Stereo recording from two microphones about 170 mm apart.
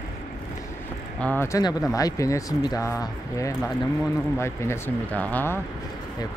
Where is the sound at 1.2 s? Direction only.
10° left (ahead or behind).